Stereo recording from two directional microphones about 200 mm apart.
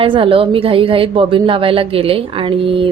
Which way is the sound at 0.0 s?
25° right (ahead or behind).